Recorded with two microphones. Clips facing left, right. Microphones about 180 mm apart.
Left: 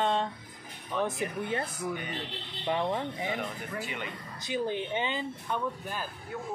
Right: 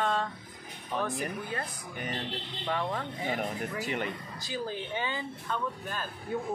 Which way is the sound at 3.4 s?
40° right (ahead or behind).